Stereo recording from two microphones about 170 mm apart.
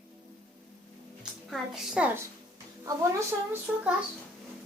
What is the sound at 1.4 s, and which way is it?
A woman's voice, centre (ahead or behind).